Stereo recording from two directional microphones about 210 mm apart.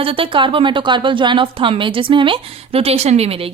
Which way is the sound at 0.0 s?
25° right (ahead or behind).